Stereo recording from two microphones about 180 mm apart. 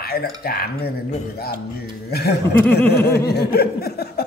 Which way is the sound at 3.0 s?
60° left (ahead or behind).